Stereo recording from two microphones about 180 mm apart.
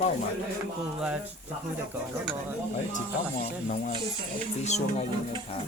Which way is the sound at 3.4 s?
35° left (ahead or behind).